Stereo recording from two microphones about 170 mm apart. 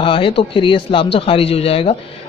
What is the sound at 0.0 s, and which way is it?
Speech, 30° left (ahead or behind).